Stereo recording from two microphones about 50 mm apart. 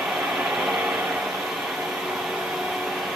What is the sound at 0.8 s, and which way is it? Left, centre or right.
Vehicle, centre.